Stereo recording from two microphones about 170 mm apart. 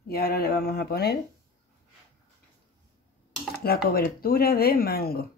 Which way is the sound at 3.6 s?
65° left (ahead or behind).